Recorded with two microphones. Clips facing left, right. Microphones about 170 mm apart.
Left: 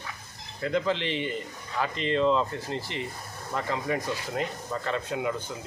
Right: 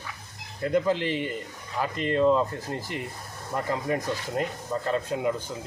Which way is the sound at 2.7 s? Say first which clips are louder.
Even; 50° right (ahead or behind).